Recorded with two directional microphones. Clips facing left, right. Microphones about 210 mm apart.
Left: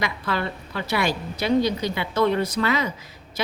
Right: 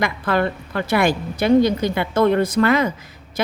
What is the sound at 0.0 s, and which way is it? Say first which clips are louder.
Speech: right 6 dB; 50° right (ahead or behind).